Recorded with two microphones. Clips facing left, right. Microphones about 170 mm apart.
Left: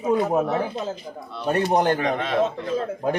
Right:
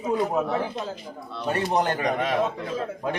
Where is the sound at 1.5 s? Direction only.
45° left (ahead or behind).